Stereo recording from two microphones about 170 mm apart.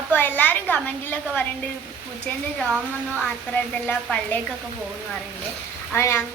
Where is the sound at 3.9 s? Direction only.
5° left (ahead or behind).